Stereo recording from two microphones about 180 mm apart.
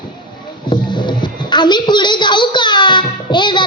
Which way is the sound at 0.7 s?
25° left (ahead or behind).